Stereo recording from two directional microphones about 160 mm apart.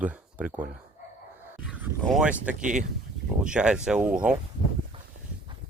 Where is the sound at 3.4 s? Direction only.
5° right (ahead or behind).